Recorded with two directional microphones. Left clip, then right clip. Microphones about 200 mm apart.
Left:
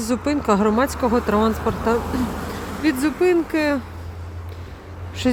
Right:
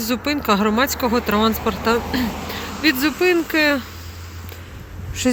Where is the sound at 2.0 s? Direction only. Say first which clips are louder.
Right 2 dB; 65° left (ahead or behind).